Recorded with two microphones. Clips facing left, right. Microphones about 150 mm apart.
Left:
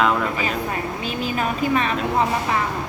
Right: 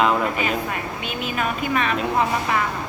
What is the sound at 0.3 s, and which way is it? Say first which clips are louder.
A woman's voice: even; 35° left (ahead or behind).